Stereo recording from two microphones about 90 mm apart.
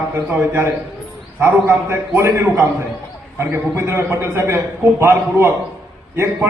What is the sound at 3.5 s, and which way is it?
A man's voice, 30° right (ahead or behind).